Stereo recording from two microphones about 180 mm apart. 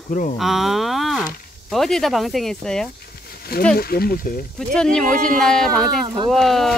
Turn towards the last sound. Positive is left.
turn(degrees=0)  # may be behind; listen again after turning